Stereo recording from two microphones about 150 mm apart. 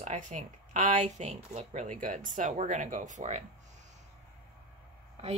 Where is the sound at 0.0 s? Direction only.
55° right (ahead or behind).